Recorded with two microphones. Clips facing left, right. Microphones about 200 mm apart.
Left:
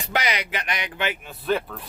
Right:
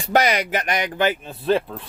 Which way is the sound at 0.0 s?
45° right (ahead or behind).